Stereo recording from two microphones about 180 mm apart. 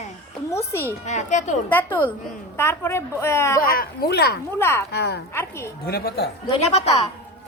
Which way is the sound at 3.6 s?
55° left (ahead or behind).